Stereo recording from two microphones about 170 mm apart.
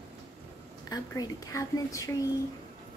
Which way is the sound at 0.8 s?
20° left (ahead or behind).